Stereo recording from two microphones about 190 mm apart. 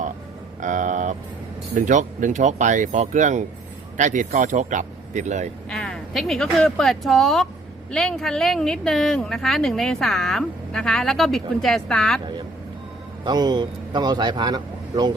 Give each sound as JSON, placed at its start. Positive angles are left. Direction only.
{"t": 0.6, "sound": "vehicle", "side_deg": -40}
{"t": 1.7, "sound": "speech", "side_deg": -40}
{"t": 5.6, "sound": "speech", "side_deg": 5}
{"t": 13.2, "sound": "speech", "side_deg": -20}